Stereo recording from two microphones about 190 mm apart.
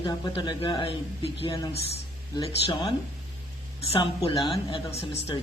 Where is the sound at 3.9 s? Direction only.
25° left (ahead or behind).